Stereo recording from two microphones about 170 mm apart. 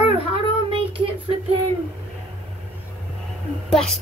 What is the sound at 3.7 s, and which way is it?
Speech, centre (ahead or behind).